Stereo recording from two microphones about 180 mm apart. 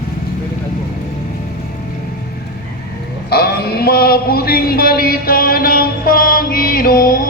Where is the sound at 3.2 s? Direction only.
60° left (ahead or behind).